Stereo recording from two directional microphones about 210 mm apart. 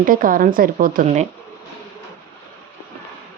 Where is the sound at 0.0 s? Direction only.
40° right (ahead or behind).